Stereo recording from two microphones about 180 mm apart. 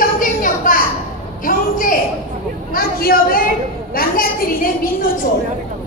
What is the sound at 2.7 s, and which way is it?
A woman's voice, 55° left (ahead or behind).